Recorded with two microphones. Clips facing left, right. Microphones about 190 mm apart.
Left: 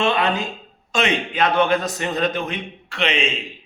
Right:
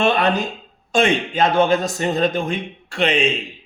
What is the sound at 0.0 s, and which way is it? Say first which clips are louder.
Speech: right 3 dB; 40° right (ahead or behind).